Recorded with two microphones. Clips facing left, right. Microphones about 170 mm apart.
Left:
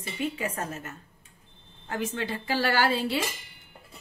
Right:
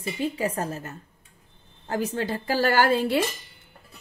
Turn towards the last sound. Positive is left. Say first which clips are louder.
# right 4 dB
turn(degrees=-50)  # may be behind; listen again after turning